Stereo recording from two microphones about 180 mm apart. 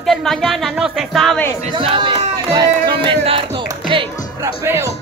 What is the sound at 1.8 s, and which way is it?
Speech, 30° right (ahead or behind).